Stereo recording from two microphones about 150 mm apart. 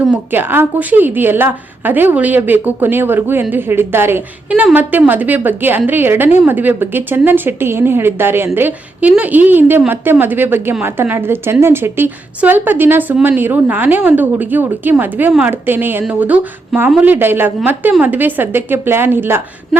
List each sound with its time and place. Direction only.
0.1 s a woman's voice: 15° right (ahead or behind)